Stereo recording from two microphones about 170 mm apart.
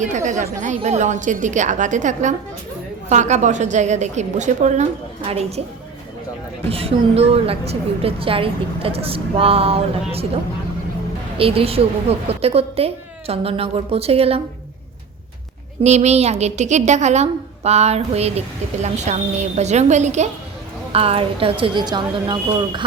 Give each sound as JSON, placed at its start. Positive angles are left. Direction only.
{"t": 0.0, "sound": "a woman's voice", "side_deg": -45}
{"t": 6.7, "sound": "a woman's voice", "side_deg": -35}
{"t": 11.3, "sound": "a woman's voice", "side_deg": -35}
{"t": 15.8, "sound": "a woman's voice", "side_deg": -40}